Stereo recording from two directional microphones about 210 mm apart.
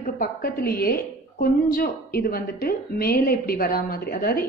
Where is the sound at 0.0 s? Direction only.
45° left (ahead or behind).